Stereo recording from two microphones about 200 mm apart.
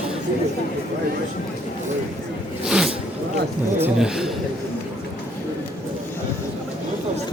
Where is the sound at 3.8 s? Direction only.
5° right (ahead or behind).